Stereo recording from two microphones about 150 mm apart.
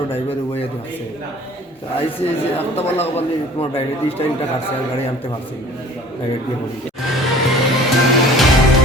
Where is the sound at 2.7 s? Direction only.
45° left (ahead or behind).